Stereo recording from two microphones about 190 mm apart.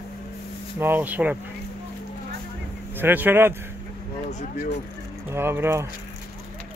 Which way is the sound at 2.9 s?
10° right (ahead or behind).